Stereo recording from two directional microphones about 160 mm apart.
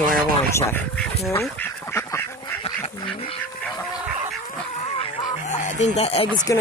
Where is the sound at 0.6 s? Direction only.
15° left (ahead or behind).